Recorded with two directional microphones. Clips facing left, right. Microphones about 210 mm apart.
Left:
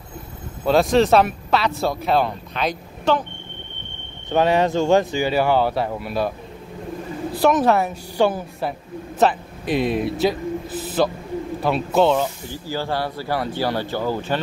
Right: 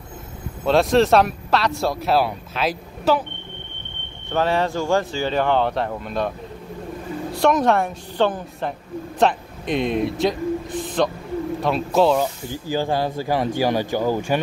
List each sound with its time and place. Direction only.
0.7 s speech: centre (ahead or behind)
4.3 s speech: 15° left (ahead or behind)
7.3 s a man's voice: 5° left (ahead or behind)
12.6 s speech: 15° right (ahead or behind)